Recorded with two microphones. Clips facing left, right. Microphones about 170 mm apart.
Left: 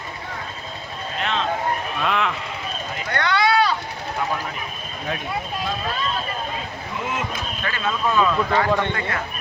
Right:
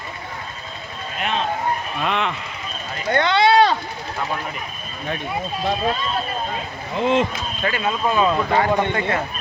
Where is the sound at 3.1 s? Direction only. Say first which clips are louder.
Right 4 dB; 25° right (ahead or behind).